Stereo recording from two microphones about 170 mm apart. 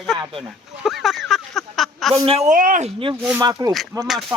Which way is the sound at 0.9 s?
Centre (ahead or behind).